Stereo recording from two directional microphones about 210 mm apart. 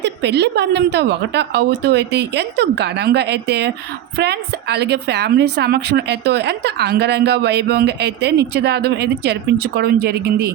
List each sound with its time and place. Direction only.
0.0 s a woman's voice: 55° right (ahead or behind)